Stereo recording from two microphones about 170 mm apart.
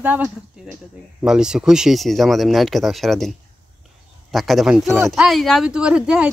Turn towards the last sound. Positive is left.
turn(degrees=-5)  # may be behind; listen again after turning